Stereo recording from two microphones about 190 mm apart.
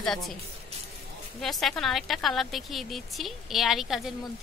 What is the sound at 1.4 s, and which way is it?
A woman's voice, centre (ahead or behind).